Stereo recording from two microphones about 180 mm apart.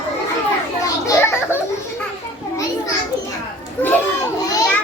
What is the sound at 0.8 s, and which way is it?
Children playing, 20° left (ahead or behind).